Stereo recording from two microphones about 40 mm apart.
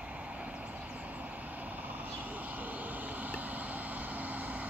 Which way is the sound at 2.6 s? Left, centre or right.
Right.